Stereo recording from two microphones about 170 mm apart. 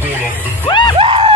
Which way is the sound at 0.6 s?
25° left (ahead or behind).